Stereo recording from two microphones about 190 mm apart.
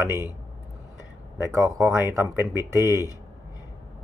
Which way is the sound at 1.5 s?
15° right (ahead or behind).